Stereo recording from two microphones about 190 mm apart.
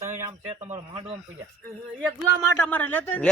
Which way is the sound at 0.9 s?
30° right (ahead or behind).